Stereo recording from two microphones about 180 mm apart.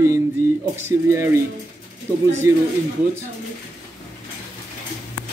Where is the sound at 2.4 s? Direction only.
15° right (ahead or behind).